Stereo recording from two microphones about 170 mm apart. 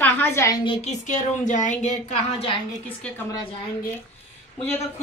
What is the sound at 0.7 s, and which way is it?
Speech, 40° left (ahead or behind).